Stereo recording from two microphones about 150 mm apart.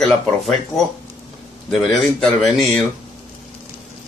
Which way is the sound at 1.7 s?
Centre (ahead or behind).